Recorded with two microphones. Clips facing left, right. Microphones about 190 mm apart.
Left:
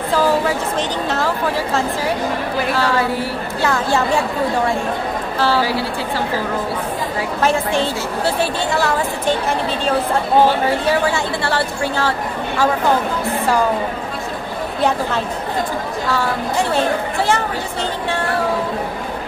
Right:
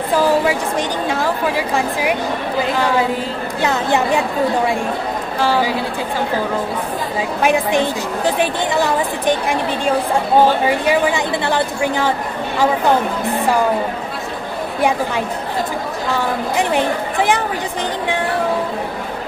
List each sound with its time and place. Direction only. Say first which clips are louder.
0.1 s a woman's voice: right 1 dB; 10° right (ahead or behind)
5.4 s a woman's voice: right 1 dB; 15° right (ahead or behind)
7.2 s a woman's voice: right 2 dB; 15° right (ahead or behind)
14.8 s a woman's voice: right 1 dB; 15° right (ahead or behind)